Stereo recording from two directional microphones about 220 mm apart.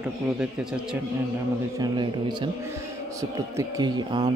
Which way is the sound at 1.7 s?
20° right (ahead or behind).